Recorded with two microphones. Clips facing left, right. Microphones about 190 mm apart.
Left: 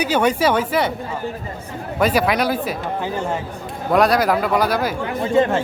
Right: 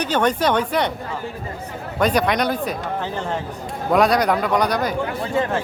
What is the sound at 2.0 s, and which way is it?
A man's voice, 5° left (ahead or behind).